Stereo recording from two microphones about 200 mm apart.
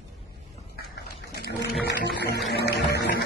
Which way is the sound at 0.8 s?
55° left (ahead or behind).